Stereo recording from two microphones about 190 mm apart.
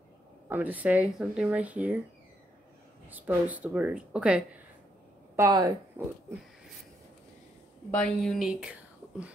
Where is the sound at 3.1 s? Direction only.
10° right (ahead or behind).